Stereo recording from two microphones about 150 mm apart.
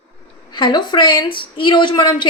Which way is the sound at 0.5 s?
30° left (ahead or behind).